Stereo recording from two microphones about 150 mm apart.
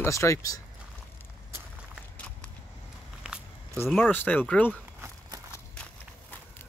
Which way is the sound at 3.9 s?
10° left (ahead or behind).